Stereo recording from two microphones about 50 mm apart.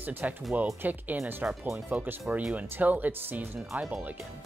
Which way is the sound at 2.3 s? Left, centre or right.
Right.